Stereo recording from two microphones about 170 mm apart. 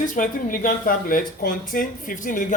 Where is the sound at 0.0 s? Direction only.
50° left (ahead or behind).